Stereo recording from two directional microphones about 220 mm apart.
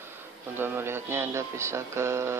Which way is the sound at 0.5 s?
10° right (ahead or behind).